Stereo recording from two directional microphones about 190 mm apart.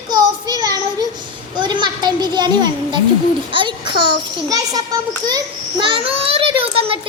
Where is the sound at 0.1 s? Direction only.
20° right (ahead or behind).